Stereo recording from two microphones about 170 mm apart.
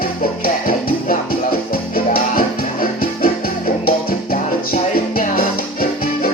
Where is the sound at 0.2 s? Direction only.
60° left (ahead or behind).